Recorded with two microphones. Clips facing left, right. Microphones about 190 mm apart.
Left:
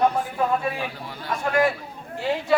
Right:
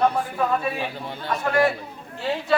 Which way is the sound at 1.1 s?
25° right (ahead or behind).